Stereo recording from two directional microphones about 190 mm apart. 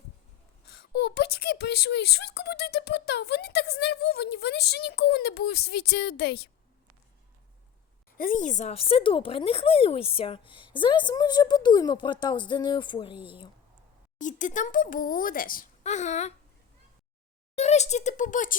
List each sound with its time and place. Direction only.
0.9 s speech: 60° left (ahead or behind)
8.2 s speech: 45° left (ahead or behind); by 13.5 s 25° left (ahead or behind)
14.2 s a child's voice: 40° left (ahead or behind)
17.5 s speech: 35° left (ahead or behind)